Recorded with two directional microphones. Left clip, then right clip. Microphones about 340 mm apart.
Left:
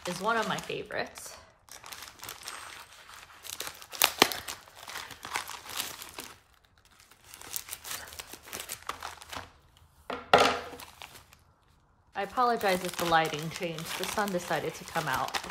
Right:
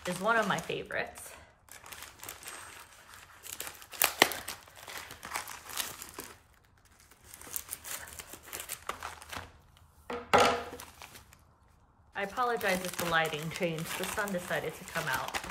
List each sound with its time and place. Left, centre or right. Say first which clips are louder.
0.0 s speech: right 1 dB; centre
1.7 s a sound: left 3 dB; centre
3.4 s crumpling: left 4 dB; centre
8.5 s crumpling: left 1 dB; centre
10.0 s a sound: left 2 dB; centre
12.1 s speech: left 4 dB; centre